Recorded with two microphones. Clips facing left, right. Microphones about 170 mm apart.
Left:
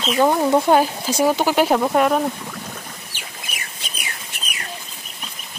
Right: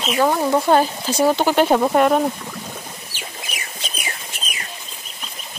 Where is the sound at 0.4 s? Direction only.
10° left (ahead or behind).